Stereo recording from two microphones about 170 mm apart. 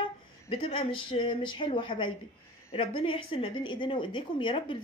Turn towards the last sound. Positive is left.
turn(degrees=30)  # may be behind; listen again after turning